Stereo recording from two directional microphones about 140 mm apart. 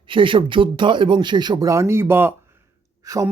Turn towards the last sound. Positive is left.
turn(degrees=-25)  # may be behind; listen again after turning